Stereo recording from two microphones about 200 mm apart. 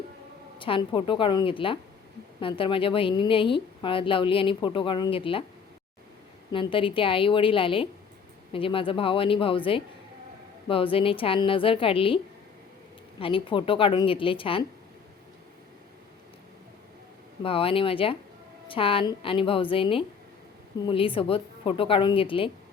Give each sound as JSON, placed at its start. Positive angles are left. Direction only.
{"t": 0.6, "sound": "a woman's voice", "side_deg": 25}
{"t": 6.5, "sound": "a woman's voice", "side_deg": 25}
{"t": 17.4, "sound": "a woman's voice", "side_deg": 25}